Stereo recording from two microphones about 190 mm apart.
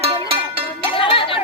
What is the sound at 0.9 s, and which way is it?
Chatter, 30° left (ahead or behind).